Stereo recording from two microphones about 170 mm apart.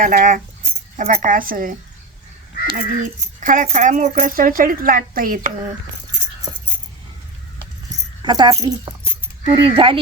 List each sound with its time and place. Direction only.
0.0 s speech: 50° right (ahead or behind)
6.5 s keys jangling: 30° right (ahead or behind)
8.2 s speech: 25° right (ahead or behind)
9.4 s cricket: 30° right (ahead or behind)